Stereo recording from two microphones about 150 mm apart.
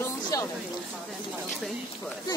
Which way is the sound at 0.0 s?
20° left (ahead or behind).